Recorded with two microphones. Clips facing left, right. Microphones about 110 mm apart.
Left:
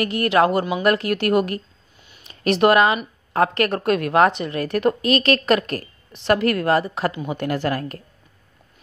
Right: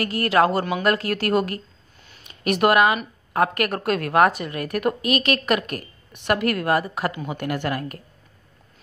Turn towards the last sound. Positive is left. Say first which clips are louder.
# left 3 dB
turn(degrees=30)  # may be behind; listen again after turning